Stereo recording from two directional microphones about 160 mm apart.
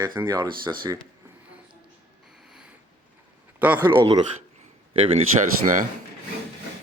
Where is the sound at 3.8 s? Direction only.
30° right (ahead or behind).